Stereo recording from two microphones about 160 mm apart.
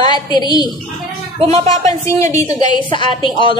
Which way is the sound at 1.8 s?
20° left (ahead or behind).